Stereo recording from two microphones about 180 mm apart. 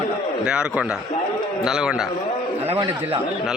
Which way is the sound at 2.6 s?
35° right (ahead or behind).